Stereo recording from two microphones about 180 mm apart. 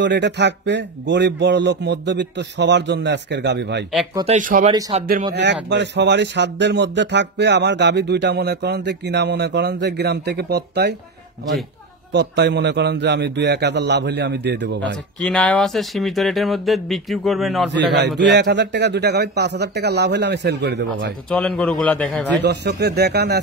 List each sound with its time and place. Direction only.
0.0 s speech: 75° right (ahead or behind)
4.3 s speech: 45° right (ahead or behind)
5.3 s speech: 70° right (ahead or behind)
12.1 s speech: 70° right (ahead or behind)
15.2 s speech: 5° left (ahead or behind)
17.6 s speech: 70° right (ahead or behind)
21.3 s speech: 5° left (ahead or behind)
22.4 s speech: 65° right (ahead or behind)